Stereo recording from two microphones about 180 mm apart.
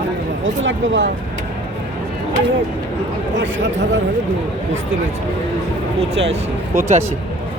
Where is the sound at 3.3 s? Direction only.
90° right.